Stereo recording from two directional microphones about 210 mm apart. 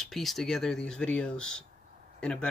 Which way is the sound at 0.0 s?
Centre (ahead or behind).